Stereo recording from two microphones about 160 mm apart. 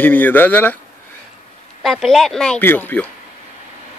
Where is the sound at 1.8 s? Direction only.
Centre (ahead or behind).